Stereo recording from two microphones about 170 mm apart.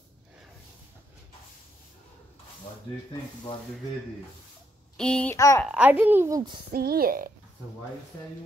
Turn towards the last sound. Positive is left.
turn(degrees=-55)  # may be behind; listen again after turning